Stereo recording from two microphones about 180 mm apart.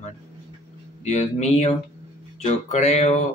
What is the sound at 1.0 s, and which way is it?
Speech, 40° left (ahead or behind).